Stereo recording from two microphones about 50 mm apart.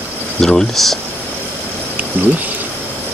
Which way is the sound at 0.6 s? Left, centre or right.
Centre.